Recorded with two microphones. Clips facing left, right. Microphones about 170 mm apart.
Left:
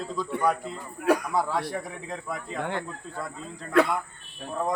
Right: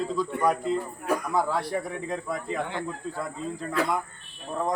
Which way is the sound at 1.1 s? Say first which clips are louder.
Left 5 dB; 80° left.